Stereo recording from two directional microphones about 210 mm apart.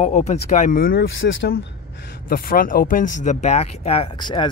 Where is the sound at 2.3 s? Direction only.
45° left (ahead or behind).